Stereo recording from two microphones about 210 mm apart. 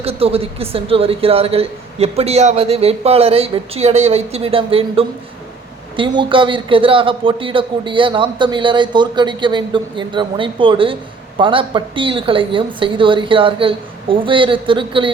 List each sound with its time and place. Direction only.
0.0 s speech: 30° right (ahead or behind)